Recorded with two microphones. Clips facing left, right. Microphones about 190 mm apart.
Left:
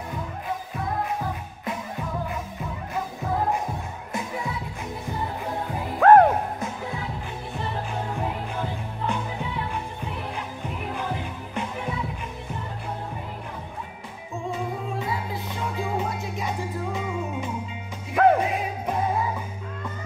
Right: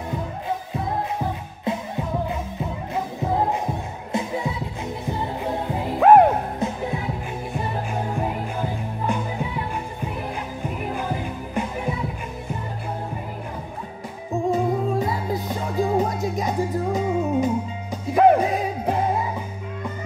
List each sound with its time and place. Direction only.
0.7 s music: 25° right (ahead or behind)
8.2 s music: 10° right (ahead or behind)
14.3 s music: 40° right (ahead or behind)